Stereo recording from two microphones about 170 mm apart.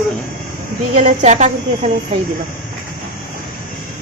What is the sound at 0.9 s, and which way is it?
Speech, 45° right (ahead or behind).